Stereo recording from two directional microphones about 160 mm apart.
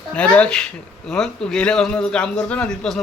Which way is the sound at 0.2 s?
5° left (ahead or behind).